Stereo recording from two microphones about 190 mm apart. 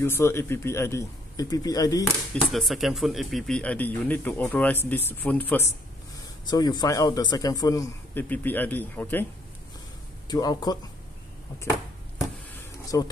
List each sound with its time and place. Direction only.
0.0 s speech: 15° left (ahead or behind)
2.5 s speech: centre (ahead or behind)
6.4 s a man's voice: 20° left (ahead or behind)
10.2 s a man's voice: 20° left (ahead or behind)
12.9 s speech: 20° left (ahead or behind)